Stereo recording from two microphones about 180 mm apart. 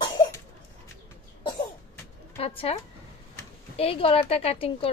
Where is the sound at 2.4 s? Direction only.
30° left (ahead or behind).